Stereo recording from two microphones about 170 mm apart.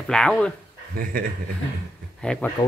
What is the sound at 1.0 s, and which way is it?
Speech, 55° right (ahead or behind).